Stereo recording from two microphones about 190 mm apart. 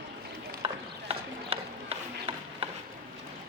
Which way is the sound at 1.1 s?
30° right (ahead or behind).